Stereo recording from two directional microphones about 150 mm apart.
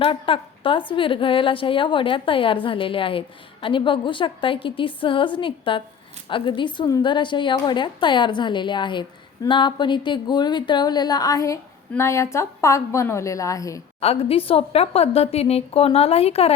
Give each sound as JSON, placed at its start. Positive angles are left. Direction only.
{"t": 0.0, "sound": "a woman's voice", "side_deg": 35}
{"t": 14.0, "sound": "a woman's voice", "side_deg": 40}